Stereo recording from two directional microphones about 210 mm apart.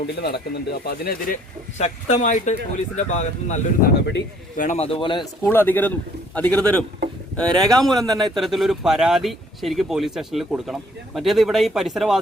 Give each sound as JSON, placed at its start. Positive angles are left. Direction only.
{"t": 0.2, "sound": "speech", "side_deg": 50}
{"t": 1.8, "sound": "speech", "side_deg": 30}
{"t": 5.4, "sound": "a man's voice", "side_deg": 10}